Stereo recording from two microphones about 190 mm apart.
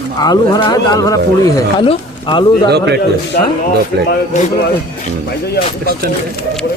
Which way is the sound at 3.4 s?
50° left (ahead or behind).